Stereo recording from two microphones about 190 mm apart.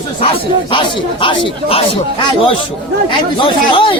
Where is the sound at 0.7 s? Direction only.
25° left (ahead or behind).